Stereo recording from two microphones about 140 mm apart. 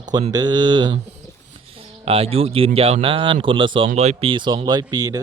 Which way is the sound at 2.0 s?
45° right (ahead or behind).